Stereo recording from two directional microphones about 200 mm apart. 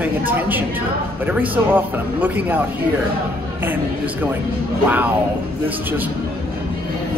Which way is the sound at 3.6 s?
10° right (ahead or behind).